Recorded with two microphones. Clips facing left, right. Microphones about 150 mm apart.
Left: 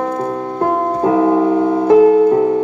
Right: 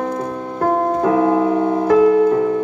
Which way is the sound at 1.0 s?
30° left (ahead or behind).